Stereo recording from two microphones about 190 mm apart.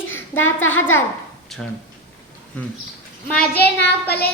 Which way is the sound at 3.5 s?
60° left (ahead or behind).